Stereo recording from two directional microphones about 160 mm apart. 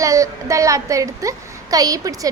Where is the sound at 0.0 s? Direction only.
20° right (ahead or behind).